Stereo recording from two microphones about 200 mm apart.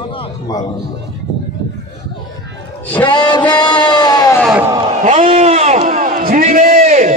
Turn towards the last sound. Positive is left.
turn(degrees=-35)  # may be behind; listen again after turning